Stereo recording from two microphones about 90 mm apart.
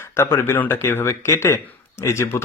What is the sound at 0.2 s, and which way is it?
Speech, 25° left (ahead or behind).